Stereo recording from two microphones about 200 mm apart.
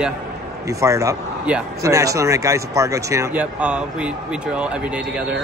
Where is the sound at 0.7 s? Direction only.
15° right (ahead or behind).